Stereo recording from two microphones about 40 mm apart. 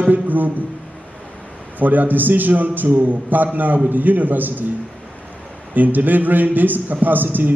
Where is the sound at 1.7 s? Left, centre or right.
Right.